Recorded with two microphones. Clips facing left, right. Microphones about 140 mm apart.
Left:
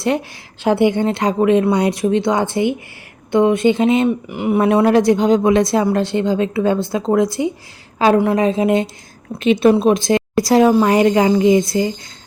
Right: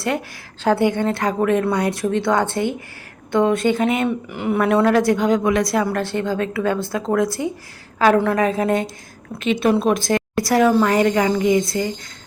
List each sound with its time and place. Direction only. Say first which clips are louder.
0.0 s speech: left 4 dB; 20° left (ahead or behind)
9.4 s a woman's voice: left 6 dB; 30° left (ahead or behind)
9.7 s speech: left 4 dB; 20° left (ahead or behind)